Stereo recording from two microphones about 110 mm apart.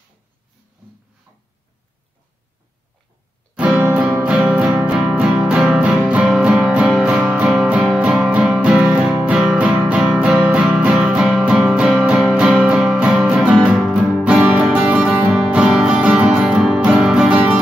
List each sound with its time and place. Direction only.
3.5 s music: 15° right (ahead or behind)